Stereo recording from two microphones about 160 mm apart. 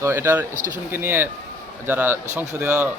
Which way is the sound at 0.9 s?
15° right (ahead or behind).